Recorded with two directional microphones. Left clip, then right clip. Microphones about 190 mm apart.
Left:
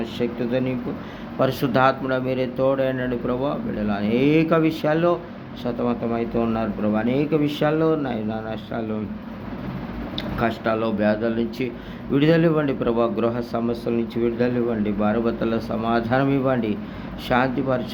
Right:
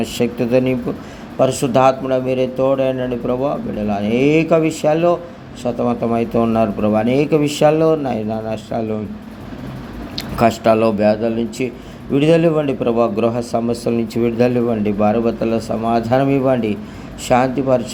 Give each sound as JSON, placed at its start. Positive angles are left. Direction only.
{"t": 0.0, "sound": "speech", "side_deg": -30}
{"t": 1.4, "sound": "a man's voice", "side_deg": -15}
{"t": 10.2, "sound": "a man's voice", "side_deg": -30}